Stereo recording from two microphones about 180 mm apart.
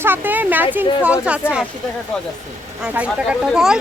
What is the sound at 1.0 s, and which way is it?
Speech, 5° right (ahead or behind).